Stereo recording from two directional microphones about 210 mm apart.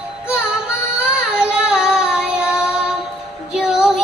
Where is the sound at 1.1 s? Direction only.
5° right (ahead or behind).